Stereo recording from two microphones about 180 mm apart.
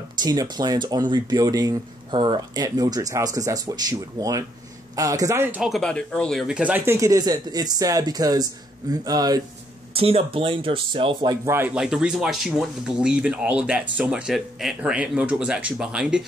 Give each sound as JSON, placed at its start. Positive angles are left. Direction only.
{"t": 0.2, "sound": "speech", "side_deg": -20}
{"t": 5.7, "sound": "speech", "side_deg": 5}
{"t": 9.9, "sound": "speech", "side_deg": -30}
{"t": 11.4, "sound": "speech", "side_deg": -10}